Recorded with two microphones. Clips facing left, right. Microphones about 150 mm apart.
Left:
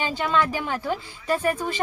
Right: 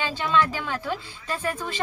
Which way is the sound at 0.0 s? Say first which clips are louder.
Even; 15° left (ahead or behind).